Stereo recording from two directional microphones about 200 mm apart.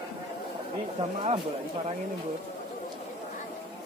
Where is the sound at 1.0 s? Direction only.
30° right (ahead or behind).